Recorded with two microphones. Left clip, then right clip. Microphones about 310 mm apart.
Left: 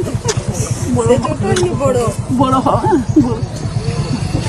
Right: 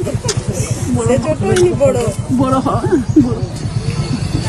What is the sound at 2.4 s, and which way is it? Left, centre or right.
Speech, centre.